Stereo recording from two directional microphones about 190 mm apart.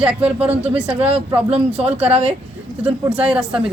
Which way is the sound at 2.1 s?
30° right (ahead or behind).